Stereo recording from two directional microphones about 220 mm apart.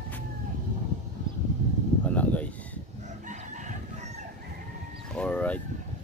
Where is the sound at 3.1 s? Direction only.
35° right (ahead or behind).